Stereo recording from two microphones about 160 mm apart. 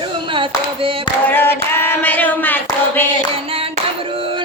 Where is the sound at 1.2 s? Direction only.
15° left (ahead or behind).